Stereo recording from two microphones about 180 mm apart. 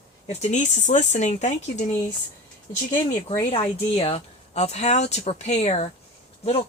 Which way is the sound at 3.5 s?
30° left (ahead or behind).